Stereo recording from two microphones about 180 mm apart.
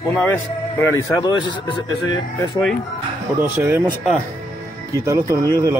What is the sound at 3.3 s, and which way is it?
Speech, 15° right (ahead or behind).